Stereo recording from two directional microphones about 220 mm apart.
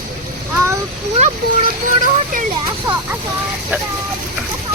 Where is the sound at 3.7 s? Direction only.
10° right (ahead or behind).